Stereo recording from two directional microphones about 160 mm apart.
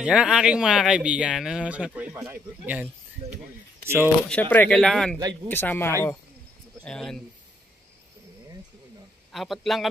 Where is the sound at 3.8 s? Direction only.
10° right (ahead or behind).